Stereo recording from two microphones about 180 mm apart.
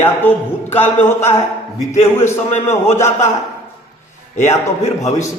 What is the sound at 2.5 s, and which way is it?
Speech, 35° left (ahead or behind).